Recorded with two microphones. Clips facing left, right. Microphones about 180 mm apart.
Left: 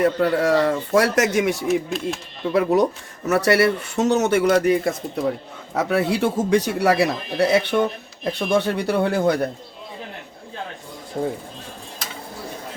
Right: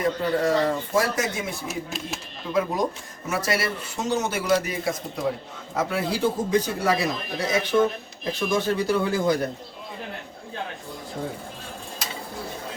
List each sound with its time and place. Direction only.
0.0 s a man's voice: 65° left (ahead or behind); by 1.6 s 80° left
1.6 s speech: centre (ahead or behind)
2.5 s a man's voice: 70° left (ahead or behind)
11.2 s speech: 50° left (ahead or behind)